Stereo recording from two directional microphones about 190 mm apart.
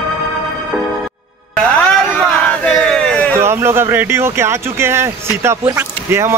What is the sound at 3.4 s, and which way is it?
Speech, 10° right (ahead or behind).